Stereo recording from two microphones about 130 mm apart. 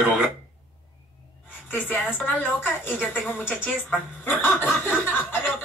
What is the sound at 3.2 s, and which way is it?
Speech, 5° left (ahead or behind).